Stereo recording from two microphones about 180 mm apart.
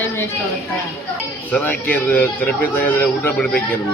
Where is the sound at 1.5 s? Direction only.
10° left (ahead or behind).